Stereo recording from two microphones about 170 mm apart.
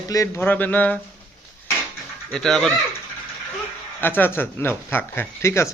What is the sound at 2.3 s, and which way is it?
Speech, 5° left (ahead or behind).